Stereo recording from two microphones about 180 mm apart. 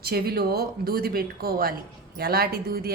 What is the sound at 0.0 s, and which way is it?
A woman's voice, 60° right (ahead or behind).